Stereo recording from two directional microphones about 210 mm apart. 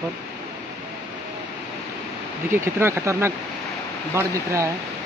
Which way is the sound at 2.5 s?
10° right (ahead or behind).